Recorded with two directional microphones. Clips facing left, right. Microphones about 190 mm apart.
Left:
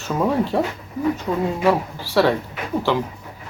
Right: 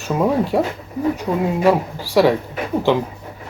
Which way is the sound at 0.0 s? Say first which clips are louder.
Right 2 dB; 10° right (ahead or behind).